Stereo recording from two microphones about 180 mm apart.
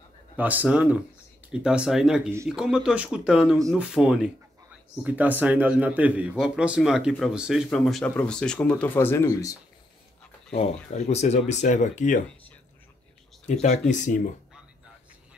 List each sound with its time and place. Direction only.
0.4 s a man's voice: 10° right (ahead or behind); by 9.6 s 15° left (ahead or behind)
10.5 s speech: 35° left (ahead or behind)
13.5 s speech: 40° left (ahead or behind)